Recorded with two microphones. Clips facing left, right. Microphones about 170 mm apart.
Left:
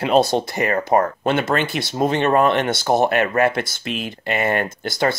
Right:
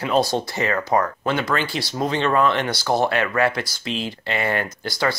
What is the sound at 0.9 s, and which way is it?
Speech, 30° left (ahead or behind).